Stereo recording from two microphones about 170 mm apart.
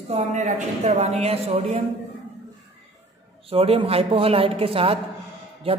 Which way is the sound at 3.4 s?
35° right (ahead or behind).